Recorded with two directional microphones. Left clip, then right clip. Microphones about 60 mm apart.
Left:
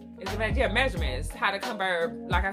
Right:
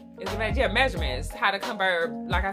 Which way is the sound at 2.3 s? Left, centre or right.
Centre.